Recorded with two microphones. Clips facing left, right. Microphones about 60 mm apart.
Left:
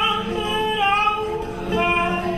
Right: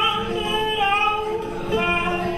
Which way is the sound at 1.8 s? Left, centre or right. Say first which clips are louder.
Left 2 dB; centre.